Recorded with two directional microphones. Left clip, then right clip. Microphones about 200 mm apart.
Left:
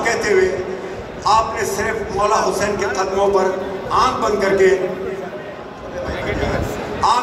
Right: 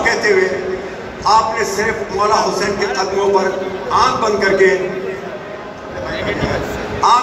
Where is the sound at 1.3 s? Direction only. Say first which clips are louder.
Right 3 dB; 50° left (ahead or behind).